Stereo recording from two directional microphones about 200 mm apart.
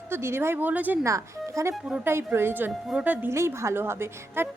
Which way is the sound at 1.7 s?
5° right (ahead or behind).